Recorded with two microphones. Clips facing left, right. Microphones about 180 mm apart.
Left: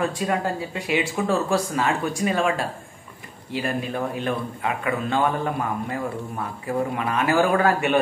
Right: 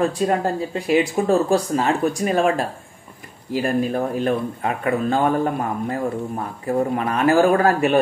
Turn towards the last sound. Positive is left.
turn(degrees=-35)  # may be behind; listen again after turning